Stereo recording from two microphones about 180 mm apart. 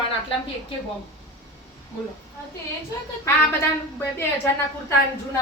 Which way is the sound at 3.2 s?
10° left (ahead or behind).